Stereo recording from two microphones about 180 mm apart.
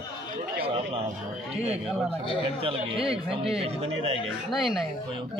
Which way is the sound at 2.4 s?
30° right (ahead or behind).